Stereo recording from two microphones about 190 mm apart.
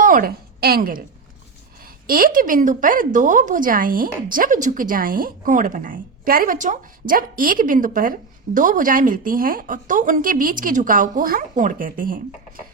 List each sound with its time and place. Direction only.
0.0 s a woman's voice: 45° right (ahead or behind)